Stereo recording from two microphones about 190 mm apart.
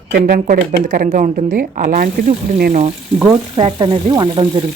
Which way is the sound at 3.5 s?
25° right (ahead or behind).